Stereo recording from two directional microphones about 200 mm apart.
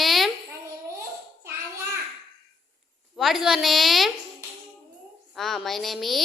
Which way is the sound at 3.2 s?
Centre (ahead or behind).